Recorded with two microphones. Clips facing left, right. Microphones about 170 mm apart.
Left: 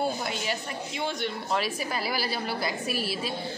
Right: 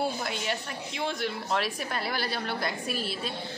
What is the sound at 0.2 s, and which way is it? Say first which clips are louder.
A woman's voice: left 1 dB; centre (ahead or behind).